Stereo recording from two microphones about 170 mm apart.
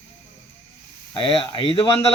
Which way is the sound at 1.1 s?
35° left (ahead or behind).